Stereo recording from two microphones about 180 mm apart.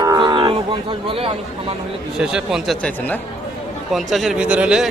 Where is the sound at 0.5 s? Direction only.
30° right (ahead or behind).